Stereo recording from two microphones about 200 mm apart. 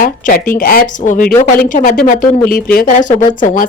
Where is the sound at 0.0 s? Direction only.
40° left (ahead or behind).